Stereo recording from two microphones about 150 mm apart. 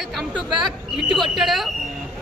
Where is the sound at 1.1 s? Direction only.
Centre (ahead or behind).